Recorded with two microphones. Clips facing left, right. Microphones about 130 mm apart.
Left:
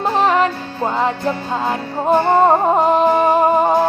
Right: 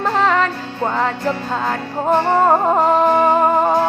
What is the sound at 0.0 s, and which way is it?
Music, 20° left (ahead or behind).